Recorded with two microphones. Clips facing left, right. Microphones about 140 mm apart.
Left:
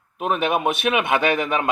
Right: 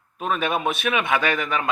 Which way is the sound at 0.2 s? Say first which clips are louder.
Left 3 dB; 20° left (ahead or behind).